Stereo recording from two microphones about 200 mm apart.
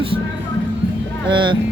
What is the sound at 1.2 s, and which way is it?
Speech, 25° right (ahead or behind).